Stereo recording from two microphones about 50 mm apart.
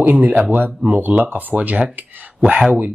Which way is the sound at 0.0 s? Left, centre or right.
Right.